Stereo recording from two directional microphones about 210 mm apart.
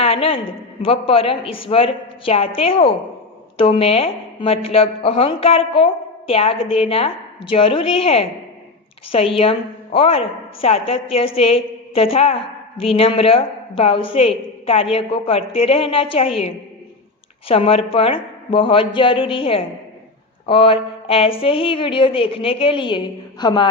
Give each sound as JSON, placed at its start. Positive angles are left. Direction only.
{"t": 0.0, "sound": "a sound", "side_deg": 25}
{"t": 0.9, "sound": "a woman's voice", "side_deg": 25}
{"t": 9.4, "sound": "a woman's voice", "side_deg": 25}
{"t": 17.5, "sound": "a woman's voice", "side_deg": 30}